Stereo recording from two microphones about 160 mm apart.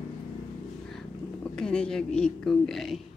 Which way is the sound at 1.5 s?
5° left (ahead or behind).